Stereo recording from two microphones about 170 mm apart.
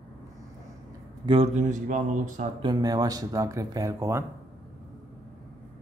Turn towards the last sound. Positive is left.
turn(degrees=-20)  # may be behind; listen again after turning